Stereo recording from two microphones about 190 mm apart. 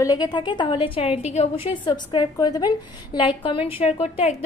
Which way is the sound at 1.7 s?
25° left (ahead or behind).